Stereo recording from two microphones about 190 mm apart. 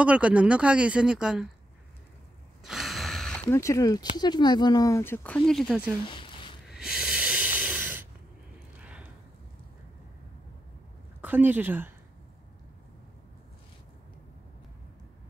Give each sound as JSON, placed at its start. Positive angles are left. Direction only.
{"t": 0.0, "sound": "speech", "side_deg": -5}
{"t": 2.6, "sound": "gasp", "side_deg": 0}
{"t": 3.4, "sound": "speech", "side_deg": 15}
{"t": 6.0, "sound": "zipper", "side_deg": 25}
{"t": 6.8, "sound": "snort", "side_deg": 0}
{"t": 8.7, "sound": "a sound", "side_deg": -5}
{"t": 11.1, "sound": "a woman's voice", "side_deg": -10}